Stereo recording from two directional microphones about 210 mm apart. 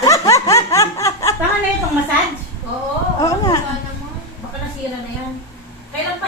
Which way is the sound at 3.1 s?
15° left (ahead or behind).